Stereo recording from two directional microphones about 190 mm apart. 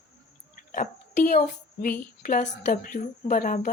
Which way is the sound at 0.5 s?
45° left (ahead or behind).